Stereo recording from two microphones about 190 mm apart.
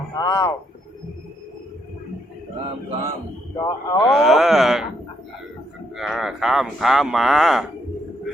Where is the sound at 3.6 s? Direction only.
20° left (ahead or behind).